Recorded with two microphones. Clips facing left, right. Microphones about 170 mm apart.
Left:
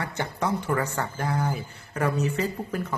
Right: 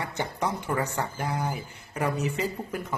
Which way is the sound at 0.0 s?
15° right (ahead or behind).